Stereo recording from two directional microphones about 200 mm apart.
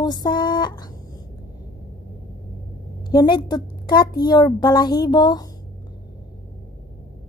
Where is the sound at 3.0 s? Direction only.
20° left (ahead or behind).